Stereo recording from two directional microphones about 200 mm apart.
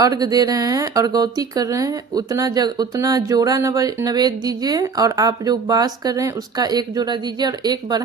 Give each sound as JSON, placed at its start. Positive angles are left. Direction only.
{"t": 0.0, "sound": "speech", "side_deg": -20}